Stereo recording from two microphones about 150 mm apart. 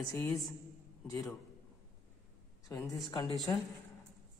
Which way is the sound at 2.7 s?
25° left (ahead or behind).